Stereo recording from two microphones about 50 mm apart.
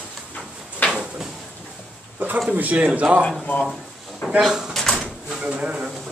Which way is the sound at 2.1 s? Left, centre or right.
Right.